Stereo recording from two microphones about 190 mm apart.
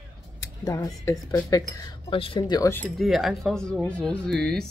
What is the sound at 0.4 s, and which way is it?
Speech, 20° left (ahead or behind).